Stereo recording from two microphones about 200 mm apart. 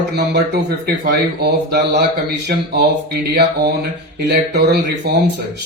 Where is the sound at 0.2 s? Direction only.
55° right (ahead or behind).